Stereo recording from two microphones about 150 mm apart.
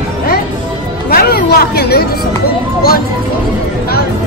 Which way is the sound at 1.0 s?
85° left.